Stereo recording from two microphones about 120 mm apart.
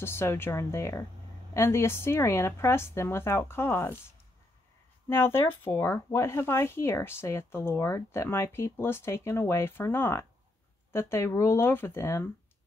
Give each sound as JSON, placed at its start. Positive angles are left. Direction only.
{"t": 0.0, "sound": "speech", "side_deg": 20}
{"t": 5.1, "sound": "speech", "side_deg": 20}